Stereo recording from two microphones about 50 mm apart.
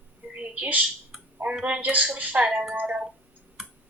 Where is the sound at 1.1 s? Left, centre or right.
Centre.